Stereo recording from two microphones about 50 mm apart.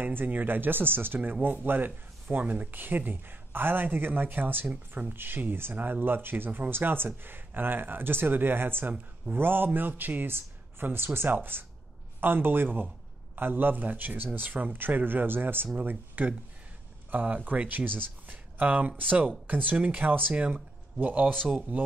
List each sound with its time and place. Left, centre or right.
0.0 s speech: right